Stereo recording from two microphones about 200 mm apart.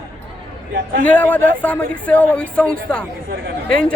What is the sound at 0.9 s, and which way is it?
Speech, 40° right (ahead or behind).